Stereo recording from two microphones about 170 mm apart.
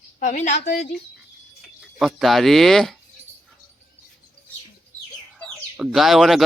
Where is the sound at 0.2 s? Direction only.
45° left (ahead or behind).